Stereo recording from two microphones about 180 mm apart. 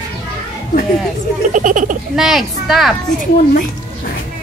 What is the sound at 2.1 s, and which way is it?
Speech, centre (ahead or behind).